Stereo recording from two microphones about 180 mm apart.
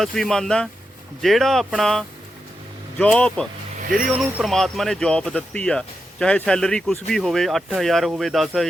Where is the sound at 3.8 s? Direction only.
50° right (ahead or behind).